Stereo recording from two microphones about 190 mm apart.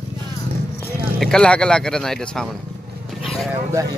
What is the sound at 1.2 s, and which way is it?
Speech, 5° left (ahead or behind).